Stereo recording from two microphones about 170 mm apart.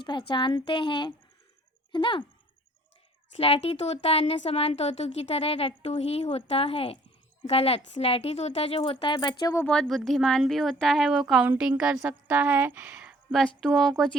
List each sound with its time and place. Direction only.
0.0 s a woman's voice: 30° left (ahead or behind)
3.3 s speech: 35° left (ahead or behind)
9.6 s a woman's voice: centre (ahead or behind)